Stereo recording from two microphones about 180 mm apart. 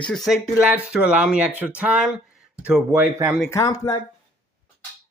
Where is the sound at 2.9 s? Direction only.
15° right (ahead or behind).